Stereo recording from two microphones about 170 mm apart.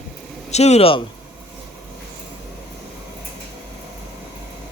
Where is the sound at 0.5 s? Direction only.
40° left (ahead or behind).